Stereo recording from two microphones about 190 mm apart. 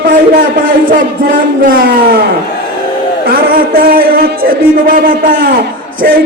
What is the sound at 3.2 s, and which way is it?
A man's voice, 50° right (ahead or behind).